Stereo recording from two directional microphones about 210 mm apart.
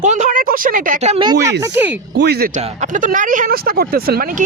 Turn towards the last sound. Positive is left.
turn(degrees=-45)  # may be behind; listen again after turning